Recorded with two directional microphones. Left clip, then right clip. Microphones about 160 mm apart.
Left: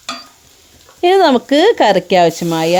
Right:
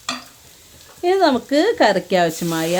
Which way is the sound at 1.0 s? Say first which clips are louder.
Left 6 dB; 55° left (ahead or behind).